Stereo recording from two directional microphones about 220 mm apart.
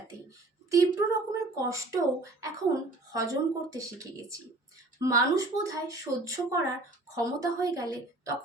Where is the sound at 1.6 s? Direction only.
15° right (ahead or behind).